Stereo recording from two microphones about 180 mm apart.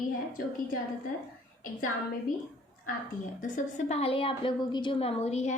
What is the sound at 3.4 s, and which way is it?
Speech, 45° left (ahead or behind).